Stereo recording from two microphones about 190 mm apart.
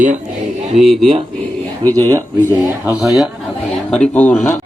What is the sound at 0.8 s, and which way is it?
A man's voice, centre (ahead or behind).